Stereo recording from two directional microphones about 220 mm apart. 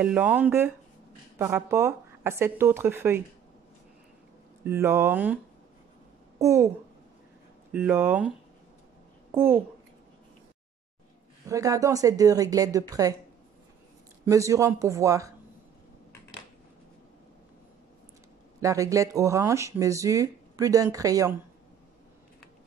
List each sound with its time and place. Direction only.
0.0 s speech: 5° right (ahead or behind)
4.6 s speech: 10° right (ahead or behind)
6.4 s speech: 15° right (ahead or behind)
7.7 s speech: 10° right (ahead or behind)
9.3 s a child's voice: 10° right (ahead or behind)
11.4 s speech: 15° right (ahead or behind)
14.2 s speech: 15° right (ahead or behind)
18.6 s speech: 15° right (ahead or behind)